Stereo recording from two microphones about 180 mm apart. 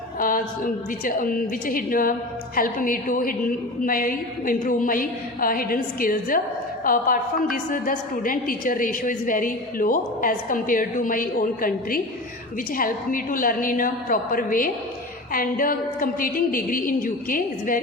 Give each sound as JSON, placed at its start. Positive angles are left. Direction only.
{"t": 0.2, "sound": "a woman's voice", "side_deg": 50}